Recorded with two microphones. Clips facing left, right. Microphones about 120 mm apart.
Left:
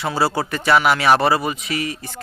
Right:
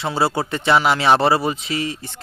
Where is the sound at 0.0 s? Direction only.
25° right (ahead or behind).